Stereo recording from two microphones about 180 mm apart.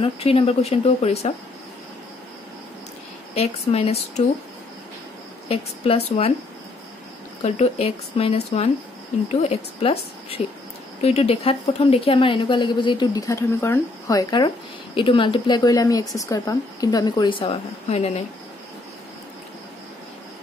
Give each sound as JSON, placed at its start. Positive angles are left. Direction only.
{"t": 0.0, "sound": "speech", "side_deg": 30}
{"t": 3.3, "sound": "speech", "side_deg": 35}
{"t": 5.5, "sound": "speech", "side_deg": 35}
{"t": 7.4, "sound": "a woman's voice", "side_deg": 35}